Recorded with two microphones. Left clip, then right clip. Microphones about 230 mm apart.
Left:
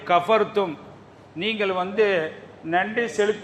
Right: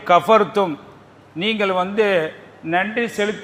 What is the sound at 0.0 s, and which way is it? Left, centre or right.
A man's voice, right.